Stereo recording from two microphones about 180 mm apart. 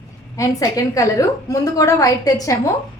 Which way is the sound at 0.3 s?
20° left (ahead or behind).